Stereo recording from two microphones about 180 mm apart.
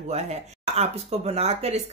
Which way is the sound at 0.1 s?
35° right (ahead or behind).